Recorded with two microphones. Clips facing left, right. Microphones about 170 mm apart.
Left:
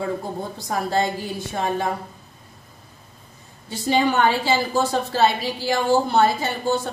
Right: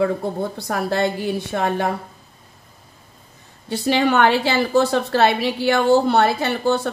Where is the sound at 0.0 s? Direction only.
65° right (ahead or behind).